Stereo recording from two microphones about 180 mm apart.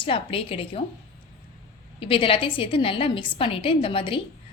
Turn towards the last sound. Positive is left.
turn(degrees=30)  # may be behind; listen again after turning